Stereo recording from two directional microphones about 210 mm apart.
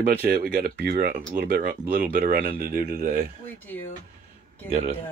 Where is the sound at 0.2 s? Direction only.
45° right (ahead or behind).